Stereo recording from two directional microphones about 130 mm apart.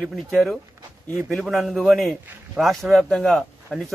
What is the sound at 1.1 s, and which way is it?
A man's voice, centre (ahead or behind).